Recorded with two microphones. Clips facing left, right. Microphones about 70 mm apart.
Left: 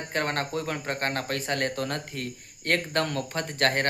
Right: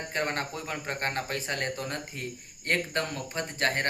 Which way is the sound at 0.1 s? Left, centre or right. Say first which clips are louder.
Left 4 dB; left.